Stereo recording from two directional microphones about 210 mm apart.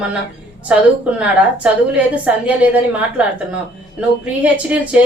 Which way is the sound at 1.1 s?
5° right (ahead or behind).